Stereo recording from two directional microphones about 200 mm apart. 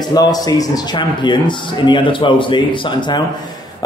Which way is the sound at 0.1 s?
20° left (ahead or behind).